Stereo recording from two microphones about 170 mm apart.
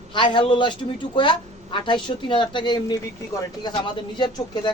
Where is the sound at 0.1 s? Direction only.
30° left (ahead or behind).